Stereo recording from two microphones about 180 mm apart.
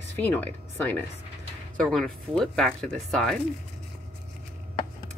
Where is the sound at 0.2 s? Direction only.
10° left (ahead or behind).